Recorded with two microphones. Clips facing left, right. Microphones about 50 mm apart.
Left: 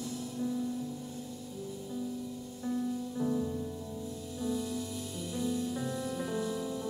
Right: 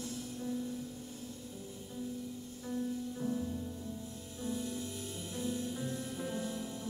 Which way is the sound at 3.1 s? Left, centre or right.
Left.